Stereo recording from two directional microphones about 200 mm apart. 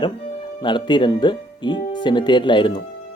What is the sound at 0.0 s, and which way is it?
Speech, 25° left (ahead or behind).